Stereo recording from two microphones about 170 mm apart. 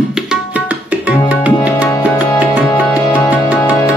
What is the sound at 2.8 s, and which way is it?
Music, 15° left (ahead or behind).